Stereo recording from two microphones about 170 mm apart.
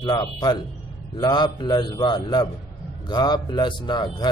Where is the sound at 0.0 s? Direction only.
25° left (ahead or behind).